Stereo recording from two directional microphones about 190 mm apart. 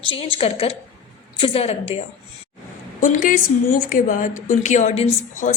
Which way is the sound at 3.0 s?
45° left (ahead or behind).